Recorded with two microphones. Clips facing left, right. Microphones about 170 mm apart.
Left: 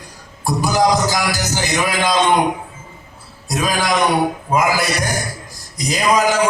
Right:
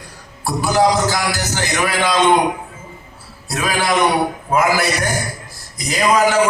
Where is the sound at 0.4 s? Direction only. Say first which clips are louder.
Right 1 dB; 15° left (ahead or behind).